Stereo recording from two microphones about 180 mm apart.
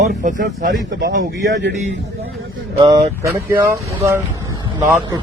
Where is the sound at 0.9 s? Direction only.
80° right.